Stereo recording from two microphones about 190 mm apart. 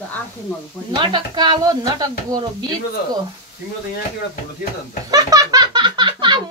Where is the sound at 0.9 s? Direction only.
25° right (ahead or behind).